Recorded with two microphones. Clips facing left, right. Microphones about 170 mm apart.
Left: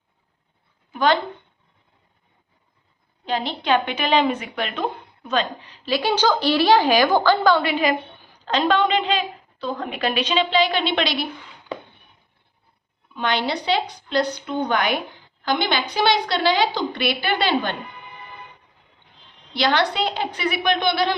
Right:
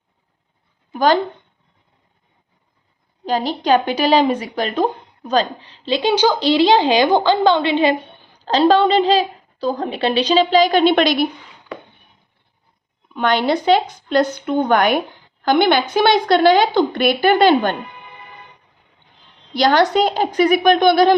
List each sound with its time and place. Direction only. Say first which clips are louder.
0.9 s speech: right 4 dB; 40° right (ahead or behind)
3.2 s a woman's voice: right 5 dB; 40° right (ahead or behind)
13.1 s a woman's voice: right 6 dB; 55° right (ahead or behind)
19.5 s a woman's voice: right 6 dB; 45° right (ahead or behind)